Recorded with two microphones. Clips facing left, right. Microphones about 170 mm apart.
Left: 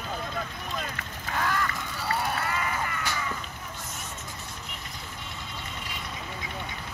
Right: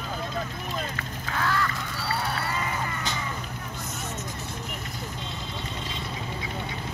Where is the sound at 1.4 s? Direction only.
15° left (ahead or behind).